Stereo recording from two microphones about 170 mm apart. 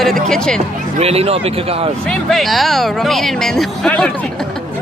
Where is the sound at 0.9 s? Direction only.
35° right (ahead or behind).